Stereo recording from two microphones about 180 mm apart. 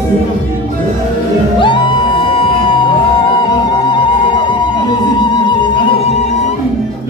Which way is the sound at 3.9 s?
25° left (ahead or behind).